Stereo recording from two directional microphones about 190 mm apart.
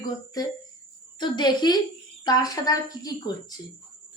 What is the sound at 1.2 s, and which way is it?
Speech, 20° left (ahead or behind).